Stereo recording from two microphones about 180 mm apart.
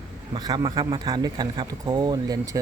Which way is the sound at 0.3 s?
25° right (ahead or behind).